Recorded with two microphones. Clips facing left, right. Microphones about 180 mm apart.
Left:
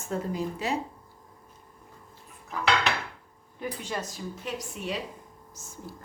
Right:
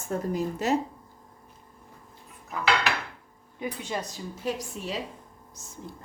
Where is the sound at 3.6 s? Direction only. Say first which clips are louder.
Right 1 dB; 15° right (ahead or behind).